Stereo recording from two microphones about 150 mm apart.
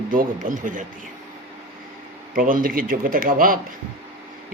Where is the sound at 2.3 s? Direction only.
70° right (ahead or behind).